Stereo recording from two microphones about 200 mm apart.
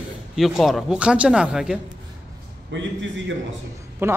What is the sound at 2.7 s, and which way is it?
Speech, 65° right (ahead or behind).